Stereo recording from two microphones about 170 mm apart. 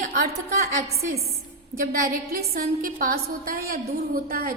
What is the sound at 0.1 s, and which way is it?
A woman's voice, 65° right (ahead or behind).